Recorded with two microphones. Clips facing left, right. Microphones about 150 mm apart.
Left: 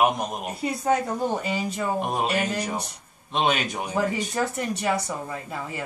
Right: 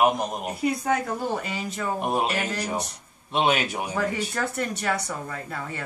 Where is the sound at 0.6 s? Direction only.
25° left (ahead or behind).